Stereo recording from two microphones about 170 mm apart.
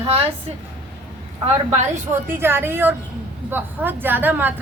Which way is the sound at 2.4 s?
10° right (ahead or behind).